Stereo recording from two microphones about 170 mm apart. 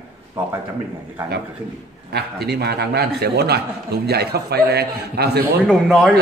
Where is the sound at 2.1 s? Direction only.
70° right (ahead or behind).